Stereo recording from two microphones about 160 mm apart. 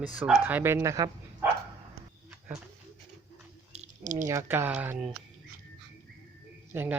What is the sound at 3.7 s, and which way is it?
Squish, 50° right (ahead or behind).